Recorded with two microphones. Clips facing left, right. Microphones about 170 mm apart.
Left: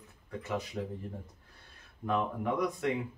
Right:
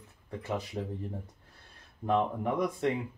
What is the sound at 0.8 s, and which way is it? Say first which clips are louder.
Speech: right 1 dB; 25° right (ahead or behind).